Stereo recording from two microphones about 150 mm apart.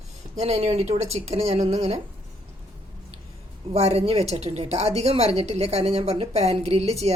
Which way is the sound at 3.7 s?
45° right (ahead or behind).